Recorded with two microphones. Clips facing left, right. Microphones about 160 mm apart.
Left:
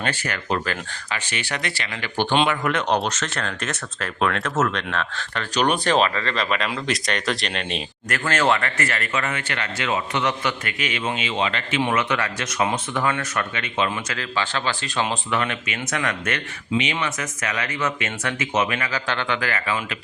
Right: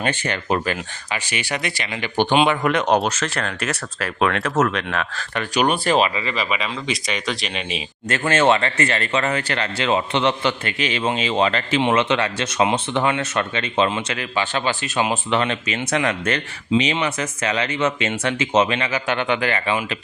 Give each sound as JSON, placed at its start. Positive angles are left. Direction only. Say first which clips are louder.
{"t": 0.0, "sound": "speech", "louder": "right 4 dB", "side_deg": -20}
{"t": 3.1, "sound": "speech", "louder": "right 3 dB", "side_deg": 0}
{"t": 8.1, "sound": "speech", "louder": "right 4 dB", "side_deg": -25}
{"t": 11.8, "sound": "speech", "louder": "right 3 dB", "side_deg": -25}
{"t": 15.3, "sound": "speech", "louder": "right 4 dB", "side_deg": -30}